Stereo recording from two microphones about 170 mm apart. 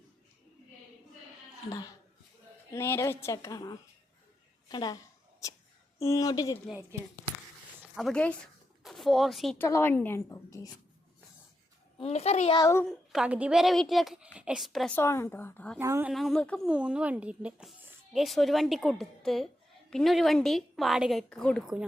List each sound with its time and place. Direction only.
2.7 s a woman's voice: 15° left (ahead or behind)
6.0 s speech: 20° left (ahead or behind)
7.9 s speech: 5° left (ahead or behind)
9.6 s a woman's voice: 15° left (ahead or behind)
11.9 s a child's voice: 40° left (ahead or behind)
12.5 s a woman's voice: 15° left (ahead or behind)
12.8 s a woman's voice: 5° right (ahead or behind)
14.9 s a woman's voice: 15° left (ahead or behind)
15.8 s speech: 15° right (ahead or behind)
16.1 s speech: centre (ahead or behind)
16.6 s speech: 5° right (ahead or behind)